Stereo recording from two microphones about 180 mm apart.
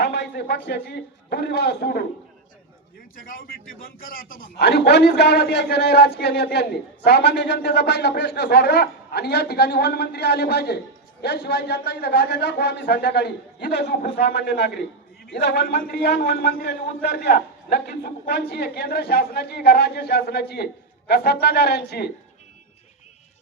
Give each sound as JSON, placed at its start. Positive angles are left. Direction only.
{"t": 0.0, "sound": "a man's voice", "side_deg": 65}
{"t": 3.2, "sound": "a man's voice", "side_deg": 50}